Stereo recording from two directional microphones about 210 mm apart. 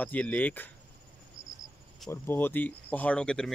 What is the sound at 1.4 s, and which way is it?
Cricket, 25° right (ahead or behind).